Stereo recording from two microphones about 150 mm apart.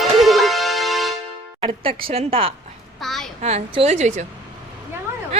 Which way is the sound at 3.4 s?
45° right (ahead or behind).